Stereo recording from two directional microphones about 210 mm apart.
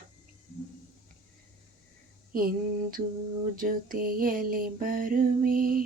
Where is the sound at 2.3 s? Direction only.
40° right (ahead or behind).